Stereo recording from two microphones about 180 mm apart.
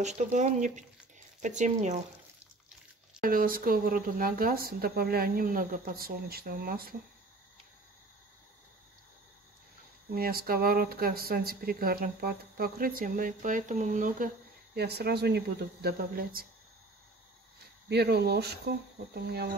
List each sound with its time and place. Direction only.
0.0 s speech: 40° right (ahead or behind)
3.2 s speech: 50° right (ahead or behind)
10.1 s speech: 55° right (ahead or behind)
14.8 s speech: 65° right (ahead or behind)
17.8 s speech: 65° right (ahead or behind)